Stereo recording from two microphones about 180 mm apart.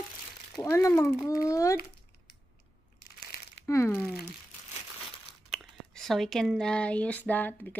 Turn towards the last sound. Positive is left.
turn(degrees=10)  # may be behind; listen again after turning